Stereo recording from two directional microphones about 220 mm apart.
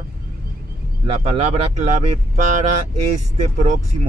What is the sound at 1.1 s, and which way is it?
Speech, 30° right (ahead or behind).